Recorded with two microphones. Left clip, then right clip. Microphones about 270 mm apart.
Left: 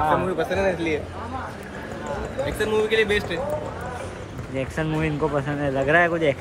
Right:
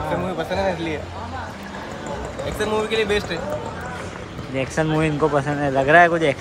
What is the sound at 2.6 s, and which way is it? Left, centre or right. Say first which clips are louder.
Speech: even; centre.